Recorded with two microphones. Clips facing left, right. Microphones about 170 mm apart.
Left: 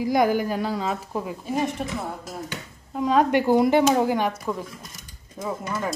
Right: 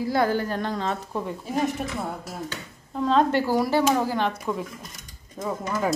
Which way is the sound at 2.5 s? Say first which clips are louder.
Left 1 dB; 10° left (ahead or behind).